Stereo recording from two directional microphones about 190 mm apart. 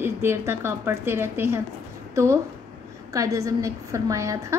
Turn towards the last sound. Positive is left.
turn(degrees=-15)  # may be behind; listen again after turning